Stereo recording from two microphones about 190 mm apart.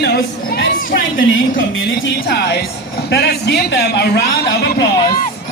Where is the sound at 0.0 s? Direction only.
60° left (ahead or behind).